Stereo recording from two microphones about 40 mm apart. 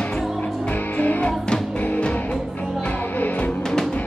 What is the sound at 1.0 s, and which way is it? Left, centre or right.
Music, left.